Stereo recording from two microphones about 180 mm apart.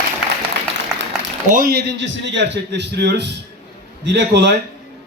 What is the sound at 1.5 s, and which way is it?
Speech, 60° right (ahead or behind).